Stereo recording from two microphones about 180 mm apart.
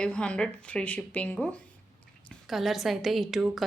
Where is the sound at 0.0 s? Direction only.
5° left (ahead or behind).